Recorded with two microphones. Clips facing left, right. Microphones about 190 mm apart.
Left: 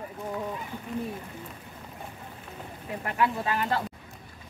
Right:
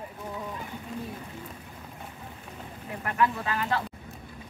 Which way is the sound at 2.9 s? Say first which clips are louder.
Even; 20° left (ahead or behind).